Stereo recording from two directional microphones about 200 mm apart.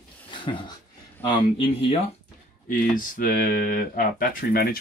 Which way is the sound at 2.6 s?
45° left (ahead or behind).